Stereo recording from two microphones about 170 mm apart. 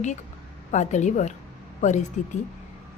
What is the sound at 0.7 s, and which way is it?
Speech, 45° left (ahead or behind).